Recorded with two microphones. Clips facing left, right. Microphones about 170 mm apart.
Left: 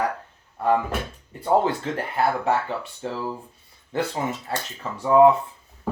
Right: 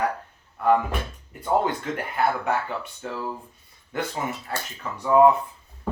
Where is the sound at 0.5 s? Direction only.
30° left (ahead or behind).